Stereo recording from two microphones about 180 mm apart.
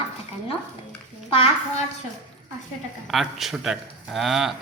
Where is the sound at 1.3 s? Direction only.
35° left (ahead or behind).